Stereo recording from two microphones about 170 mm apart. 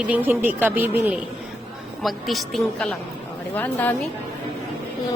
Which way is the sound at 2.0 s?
Centre (ahead or behind).